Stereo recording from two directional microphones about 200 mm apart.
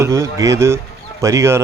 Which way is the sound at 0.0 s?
15° right (ahead or behind).